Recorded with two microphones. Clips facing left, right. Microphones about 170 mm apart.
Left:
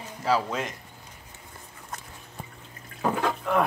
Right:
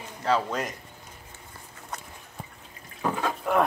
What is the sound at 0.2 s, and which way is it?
Speech, 5° left (ahead or behind).